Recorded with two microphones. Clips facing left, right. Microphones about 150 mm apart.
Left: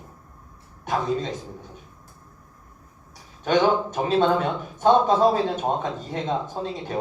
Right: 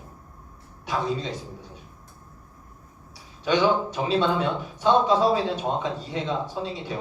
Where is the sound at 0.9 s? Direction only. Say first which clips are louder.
Left 3 dB; 50° left (ahead or behind).